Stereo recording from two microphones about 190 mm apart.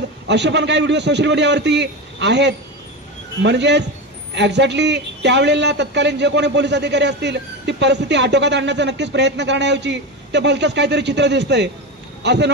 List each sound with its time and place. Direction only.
0.3 s a man's voice: 65° right (ahead or behind)